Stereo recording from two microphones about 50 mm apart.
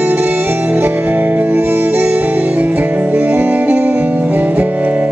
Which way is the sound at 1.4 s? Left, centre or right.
Right.